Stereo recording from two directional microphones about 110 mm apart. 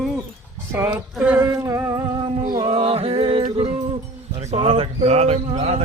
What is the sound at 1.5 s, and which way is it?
Music, 30° right (ahead or behind).